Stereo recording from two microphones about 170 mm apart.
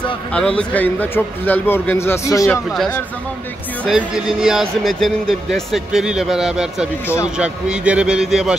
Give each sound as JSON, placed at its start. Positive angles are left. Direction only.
{"t": 0.3, "sound": "a man's voice", "side_deg": 5}
{"t": 3.8, "sound": "speech", "side_deg": 0}